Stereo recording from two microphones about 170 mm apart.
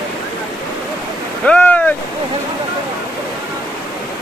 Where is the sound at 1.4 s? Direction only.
10° left (ahead or behind).